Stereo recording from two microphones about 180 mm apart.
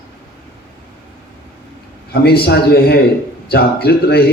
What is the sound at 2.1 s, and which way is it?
A man's voice, 60° left (ahead or behind).